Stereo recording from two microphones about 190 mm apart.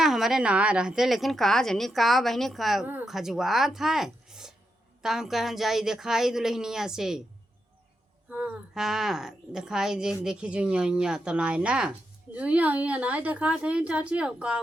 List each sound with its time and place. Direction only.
0.0 s a woman's voice: centre (ahead or behind)
8.3 s a woman's voice: 10° right (ahead or behind)